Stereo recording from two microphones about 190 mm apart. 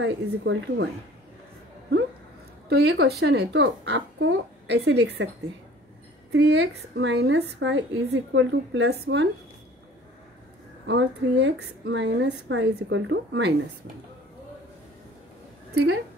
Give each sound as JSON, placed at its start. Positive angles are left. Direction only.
{"t": 0.0, "sound": "speech", "side_deg": -80}
{"t": 2.7, "sound": "speech", "side_deg": -60}
{"t": 6.3, "sound": "a woman's voice", "side_deg": -65}
{"t": 10.9, "sound": "a woman's voice", "side_deg": -70}
{"t": 15.7, "sound": "a woman's voice", "side_deg": -60}